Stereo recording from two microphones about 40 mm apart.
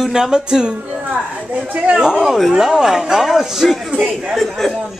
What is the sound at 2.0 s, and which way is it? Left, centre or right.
Speech, centre.